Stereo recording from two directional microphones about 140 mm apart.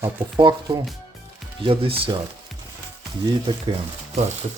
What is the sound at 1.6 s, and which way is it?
Speech, 40° right (ahead or behind).